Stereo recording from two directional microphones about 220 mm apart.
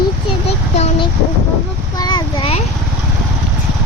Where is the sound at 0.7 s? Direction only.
30° left (ahead or behind).